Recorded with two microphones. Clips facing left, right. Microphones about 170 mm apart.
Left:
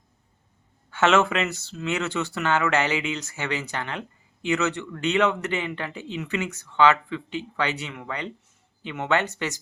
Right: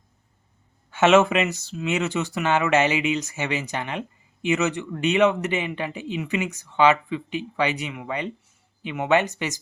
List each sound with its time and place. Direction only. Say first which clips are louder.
0.9 s speech: right 4 dB; 20° right (ahead or behind)